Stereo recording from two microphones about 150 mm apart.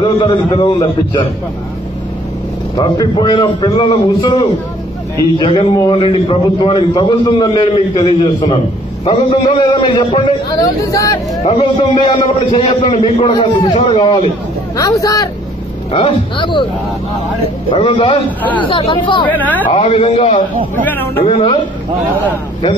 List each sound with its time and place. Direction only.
0.0 s a man's voice: 35° left (ahead or behind)
2.8 s a man's voice: 30° left (ahead or behind)
10.9 s speech: 20° left (ahead or behind)
11.4 s a man's voice: 35° left (ahead or behind)
14.8 s speech: 20° left (ahead or behind)
15.9 s a man's voice: 40° left (ahead or behind)
17.6 s a man's voice: 40° left (ahead or behind)
19.2 s speech: 10° left (ahead or behind)
19.7 s a man's voice: 40° left (ahead or behind)
20.8 s speech: 15° left (ahead or behind)
21.2 s a man's voice: 40° left (ahead or behind)